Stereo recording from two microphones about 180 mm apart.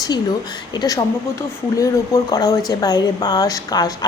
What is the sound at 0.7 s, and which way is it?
Speech, 25° left (ahead or behind).